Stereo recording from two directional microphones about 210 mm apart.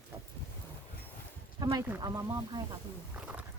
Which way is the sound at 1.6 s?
20° right (ahead or behind).